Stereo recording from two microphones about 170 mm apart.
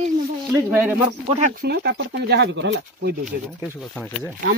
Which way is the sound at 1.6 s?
70° right (ahead or behind).